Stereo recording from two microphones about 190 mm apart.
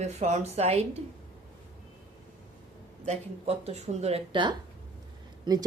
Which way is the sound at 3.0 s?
35° right (ahead or behind).